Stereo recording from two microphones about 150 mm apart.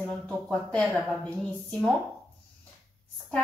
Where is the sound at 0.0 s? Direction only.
5° left (ahead or behind).